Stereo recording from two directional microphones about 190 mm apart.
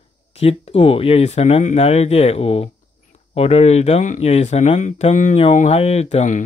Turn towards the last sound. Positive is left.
turn(degrees=40)  # may be behind; listen again after turning